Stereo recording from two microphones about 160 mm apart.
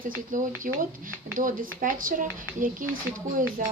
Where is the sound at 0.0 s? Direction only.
60° right (ahead or behind).